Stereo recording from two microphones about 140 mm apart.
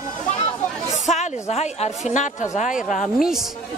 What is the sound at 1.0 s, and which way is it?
A woman's voice, 55° left (ahead or behind).